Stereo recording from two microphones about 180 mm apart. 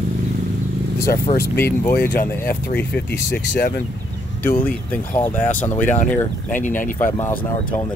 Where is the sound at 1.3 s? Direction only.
40° left (ahead or behind).